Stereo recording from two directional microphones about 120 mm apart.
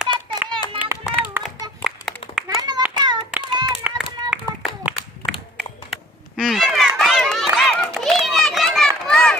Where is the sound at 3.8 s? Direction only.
15° right (ahead or behind).